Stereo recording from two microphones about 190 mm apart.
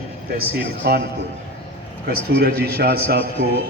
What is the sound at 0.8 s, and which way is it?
Speech, 60° right (ahead or behind).